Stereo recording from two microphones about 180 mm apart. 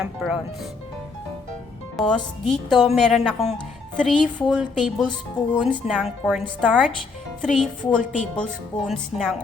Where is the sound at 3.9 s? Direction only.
5° left (ahead or behind).